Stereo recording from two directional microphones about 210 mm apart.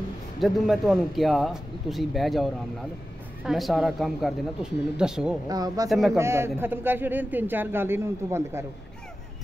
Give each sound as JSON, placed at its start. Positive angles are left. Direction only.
{"t": 0.4, "sound": "speech", "side_deg": 0}
{"t": 5.5, "sound": "a man's voice", "side_deg": -20}
{"t": 5.9, "sound": "speech", "side_deg": 0}
{"t": 6.1, "sound": "a man's voice", "side_deg": -10}